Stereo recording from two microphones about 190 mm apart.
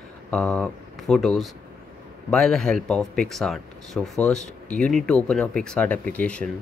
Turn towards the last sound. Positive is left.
turn(degrees=5)  # may be behind; listen again after turning